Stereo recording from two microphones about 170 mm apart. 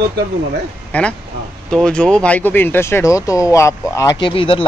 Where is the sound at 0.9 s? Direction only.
10° left (ahead or behind); by 4.7 s 30° left (ahead or behind).